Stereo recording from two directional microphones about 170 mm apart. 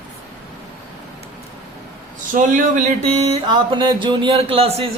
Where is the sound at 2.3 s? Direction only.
50° right (ahead or behind).